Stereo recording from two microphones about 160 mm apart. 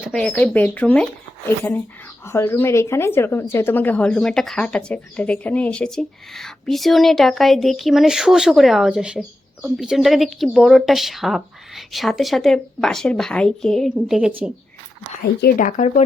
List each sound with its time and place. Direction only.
0.0 s speech: 5° left (ahead or behind)
15.2 s speech: 75° left (ahead or behind)
15.6 s speech: 50° left (ahead or behind)